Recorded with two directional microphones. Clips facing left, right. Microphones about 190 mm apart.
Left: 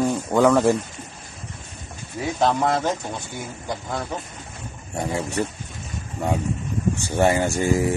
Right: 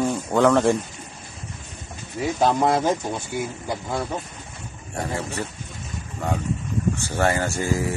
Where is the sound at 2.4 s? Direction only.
10° right (ahead or behind).